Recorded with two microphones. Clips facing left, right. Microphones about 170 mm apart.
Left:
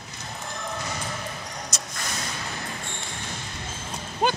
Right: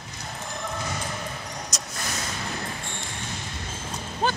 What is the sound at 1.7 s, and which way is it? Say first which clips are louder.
Vehicle: even; centre (ahead or behind).